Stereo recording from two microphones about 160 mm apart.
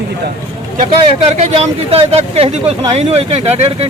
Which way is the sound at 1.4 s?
40° right (ahead or behind).